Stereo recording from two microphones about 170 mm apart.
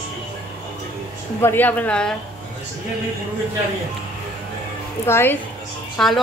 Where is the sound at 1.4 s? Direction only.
10° left (ahead or behind).